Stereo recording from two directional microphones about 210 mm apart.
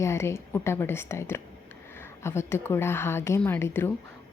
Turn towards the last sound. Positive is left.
turn(degrees=10)  # may be behind; listen again after turning